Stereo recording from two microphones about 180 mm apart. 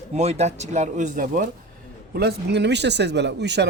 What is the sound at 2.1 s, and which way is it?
Speech, 65° right (ahead or behind).